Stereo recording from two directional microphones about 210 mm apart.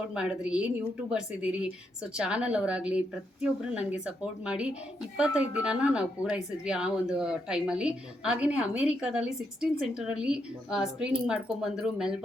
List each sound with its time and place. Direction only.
0.1 s speech: 5° right (ahead or behind)